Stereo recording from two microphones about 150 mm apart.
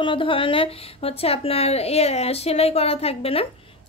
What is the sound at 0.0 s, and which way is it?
A woman's voice, 35° left (ahead or behind).